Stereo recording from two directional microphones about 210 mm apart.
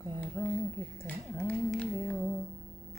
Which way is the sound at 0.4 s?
15° left (ahead or behind).